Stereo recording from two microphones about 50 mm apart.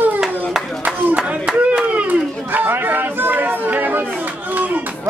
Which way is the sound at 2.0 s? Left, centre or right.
Right.